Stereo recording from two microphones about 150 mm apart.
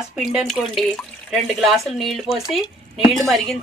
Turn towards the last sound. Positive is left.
turn(degrees=0)  # may be behind; listen again after turning